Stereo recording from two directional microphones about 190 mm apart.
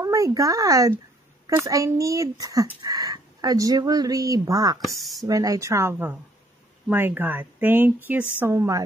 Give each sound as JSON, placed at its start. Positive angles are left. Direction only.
{"t": 0.0, "sound": "a woman's voice", "side_deg": -15}
{"t": 4.8, "sound": "speech", "side_deg": 0}
{"t": 5.2, "sound": "a woman's voice", "side_deg": -20}